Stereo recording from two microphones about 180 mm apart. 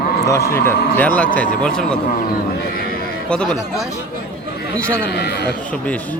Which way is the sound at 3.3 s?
5° left (ahead or behind).